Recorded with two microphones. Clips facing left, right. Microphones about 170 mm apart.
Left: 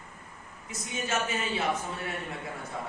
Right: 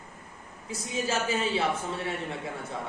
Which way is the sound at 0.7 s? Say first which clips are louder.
Right 2 dB; 30° right (ahead or behind).